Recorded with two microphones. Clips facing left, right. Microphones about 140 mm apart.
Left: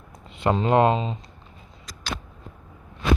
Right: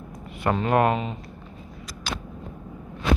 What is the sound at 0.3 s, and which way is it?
Speech, 25° left (ahead or behind).